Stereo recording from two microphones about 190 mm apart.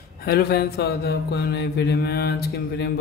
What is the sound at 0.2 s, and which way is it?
Speech, 55° left (ahead or behind).